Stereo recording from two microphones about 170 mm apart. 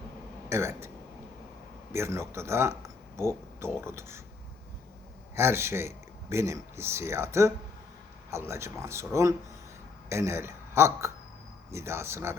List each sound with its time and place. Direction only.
0.5 s a man's voice: 15° right (ahead or behind)
1.9 s speech: 15° right (ahead or behind)
5.3 s a man's voice: 15° right (ahead or behind)